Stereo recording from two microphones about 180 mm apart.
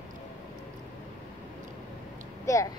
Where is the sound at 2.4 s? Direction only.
15° left (ahead or behind).